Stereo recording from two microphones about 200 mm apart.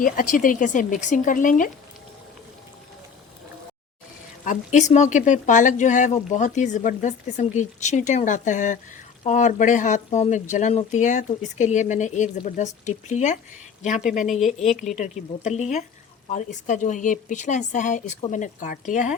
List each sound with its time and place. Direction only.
0.0 s speech: 45° left (ahead or behind)
4.4 s speech: 40° left (ahead or behind)
14.3 s a woman's voice: centre (ahead or behind)
14.9 s speech: 35° left (ahead or behind)